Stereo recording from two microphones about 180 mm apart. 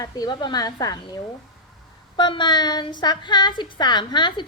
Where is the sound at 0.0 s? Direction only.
20° left (ahead or behind).